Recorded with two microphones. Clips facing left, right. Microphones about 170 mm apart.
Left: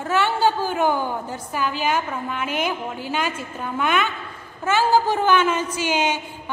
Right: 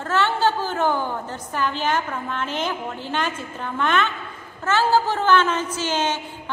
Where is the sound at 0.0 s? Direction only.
10° left (ahead or behind).